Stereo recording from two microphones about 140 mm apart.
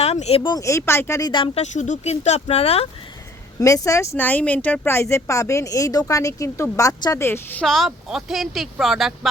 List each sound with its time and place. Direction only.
0.0 s speech: 50° left (ahead or behind)
0.5 s speech: 20° left (ahead or behind)
1.5 s speech: 55° left (ahead or behind)
3.6 s speech: 25° left (ahead or behind)
7.6 s speech: centre (ahead or behind)